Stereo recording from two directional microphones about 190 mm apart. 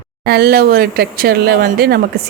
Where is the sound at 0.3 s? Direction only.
55° right (ahead or behind).